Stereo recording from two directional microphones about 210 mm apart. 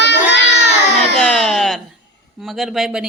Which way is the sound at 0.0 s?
55° left (ahead or behind).